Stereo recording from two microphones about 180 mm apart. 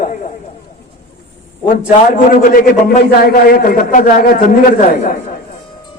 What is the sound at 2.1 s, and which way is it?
A man's voice, 50° left (ahead or behind).